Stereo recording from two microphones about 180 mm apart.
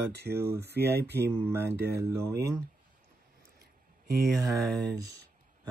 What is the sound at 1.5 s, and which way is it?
Speech, 15° right (ahead or behind).